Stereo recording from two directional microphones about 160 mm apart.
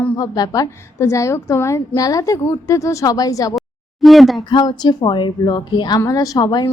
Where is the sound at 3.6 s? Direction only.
Centre (ahead or behind).